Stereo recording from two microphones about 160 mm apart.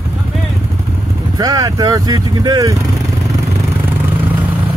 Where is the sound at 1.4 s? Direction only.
20° right (ahead or behind).